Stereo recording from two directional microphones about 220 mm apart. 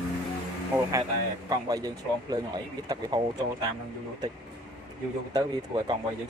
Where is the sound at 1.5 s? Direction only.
15° right (ahead or behind).